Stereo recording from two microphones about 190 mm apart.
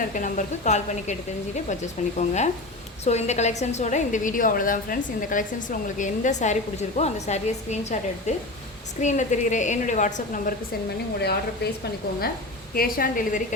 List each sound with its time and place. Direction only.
0.1 s a woman's voice: 40° left (ahead or behind)
2.1 s a woman's voice: 40° left (ahead or behind)
11.2 s speech: 60° left (ahead or behind)
12.7 s a woman's voice: 50° left (ahead or behind)